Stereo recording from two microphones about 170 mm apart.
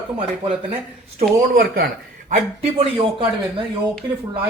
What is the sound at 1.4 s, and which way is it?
Speech, 60° right (ahead or behind).